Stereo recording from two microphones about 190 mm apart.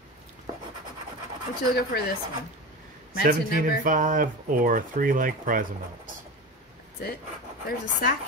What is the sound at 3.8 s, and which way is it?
Speech, 45° right (ahead or behind).